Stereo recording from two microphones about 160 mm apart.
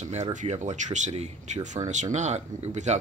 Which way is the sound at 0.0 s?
45° right (ahead or behind).